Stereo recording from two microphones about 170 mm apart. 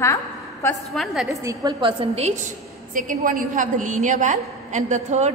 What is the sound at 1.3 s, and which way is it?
A woman's voice, 20° right (ahead or behind).